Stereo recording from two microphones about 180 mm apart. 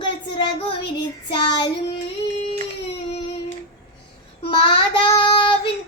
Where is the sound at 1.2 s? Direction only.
25° left (ahead or behind).